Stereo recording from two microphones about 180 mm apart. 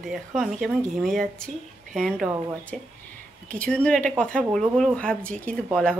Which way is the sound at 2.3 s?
15° right (ahead or behind).